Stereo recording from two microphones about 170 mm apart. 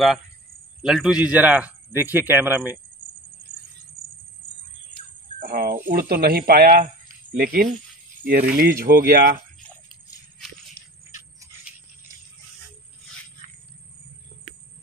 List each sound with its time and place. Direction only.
0.8 s speech: 5° right (ahead or behind)
5.4 s jingle bell: 60° right (ahead or behind)
5.9 s speech: 60° right (ahead or behind)